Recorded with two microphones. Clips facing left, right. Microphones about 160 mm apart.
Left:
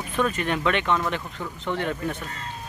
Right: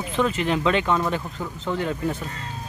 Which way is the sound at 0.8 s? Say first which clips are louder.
Right 2 dB; 10° right (ahead or behind).